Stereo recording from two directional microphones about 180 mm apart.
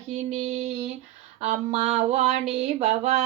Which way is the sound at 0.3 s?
40° right (ahead or behind).